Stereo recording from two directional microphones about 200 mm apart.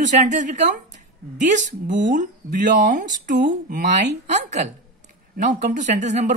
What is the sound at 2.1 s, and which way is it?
Speech, 40° right (ahead or behind).